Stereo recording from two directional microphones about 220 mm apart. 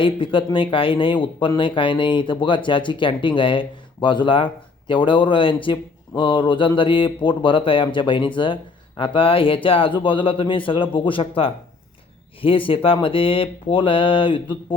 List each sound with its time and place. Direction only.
0.0 s speech: 25° left (ahead or behind)